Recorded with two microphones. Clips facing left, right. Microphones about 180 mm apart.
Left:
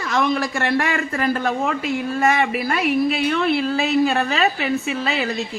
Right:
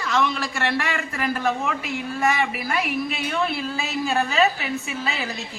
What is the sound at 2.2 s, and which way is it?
Speech, 60° left (ahead or behind).